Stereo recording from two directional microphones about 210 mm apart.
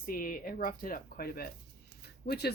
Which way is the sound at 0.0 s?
40° left (ahead or behind).